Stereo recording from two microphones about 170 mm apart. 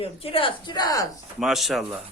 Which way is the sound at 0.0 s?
35° left (ahead or behind).